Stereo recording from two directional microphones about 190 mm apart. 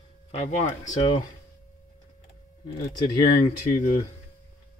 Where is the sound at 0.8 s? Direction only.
20° left (ahead or behind).